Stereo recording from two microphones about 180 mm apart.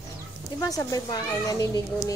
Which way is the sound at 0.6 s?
20° left (ahead or behind).